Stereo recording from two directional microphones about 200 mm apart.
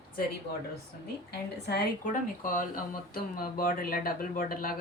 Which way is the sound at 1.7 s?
50° left (ahead or behind).